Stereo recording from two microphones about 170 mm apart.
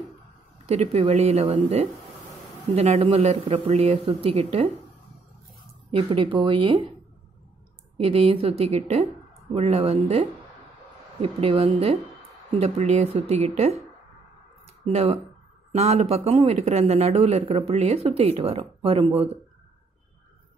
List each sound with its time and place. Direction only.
0.7 s a man's voice: 35° right (ahead or behind)
5.9 s speech: 35° right (ahead or behind)
8.0 s a man's voice: 35° right (ahead or behind)
14.8 s a man's voice: 35° right (ahead or behind)